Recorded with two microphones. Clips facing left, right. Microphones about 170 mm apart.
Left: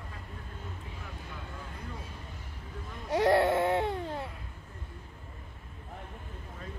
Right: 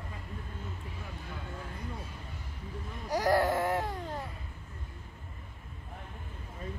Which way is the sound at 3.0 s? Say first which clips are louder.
Left 3 dB; 25° left (ahead or behind).